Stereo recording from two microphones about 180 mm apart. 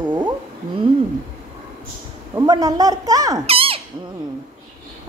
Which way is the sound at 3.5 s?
30° right (ahead or behind).